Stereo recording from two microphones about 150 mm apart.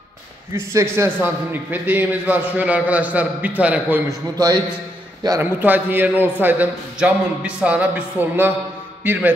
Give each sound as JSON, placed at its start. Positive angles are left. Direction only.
{"t": 0.9, "sound": "a man's voice", "side_deg": -15}
{"t": 5.2, "sound": "a man's voice", "side_deg": -25}
{"t": 5.6, "sound": "a man's voice", "side_deg": -10}